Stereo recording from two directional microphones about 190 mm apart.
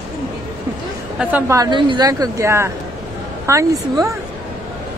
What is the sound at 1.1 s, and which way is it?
Speech, 10° right (ahead or behind).